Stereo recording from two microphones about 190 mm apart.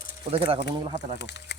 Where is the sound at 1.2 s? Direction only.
65° left (ahead or behind).